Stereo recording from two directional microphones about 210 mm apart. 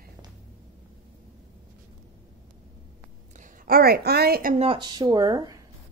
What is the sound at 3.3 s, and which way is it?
A woman's voice, 40° right (ahead or behind).